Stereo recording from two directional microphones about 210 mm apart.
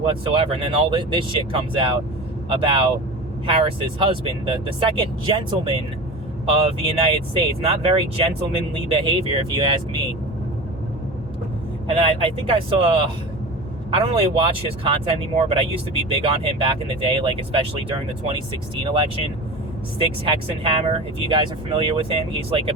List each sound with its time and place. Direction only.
0.0 s speech: 25° right (ahead or behind)
11.9 s speech: 25° right (ahead or behind)